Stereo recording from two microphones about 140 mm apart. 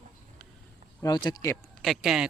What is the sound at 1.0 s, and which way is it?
Speech, 30° left (ahead or behind).